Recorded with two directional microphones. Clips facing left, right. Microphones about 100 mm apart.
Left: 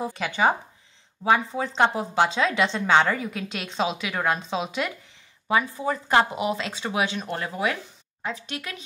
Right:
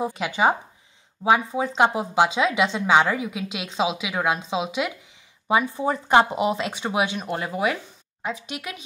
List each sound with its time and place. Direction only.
0.0 s speech: 10° right (ahead or behind)
5.5 s speech: 20° right (ahead or behind)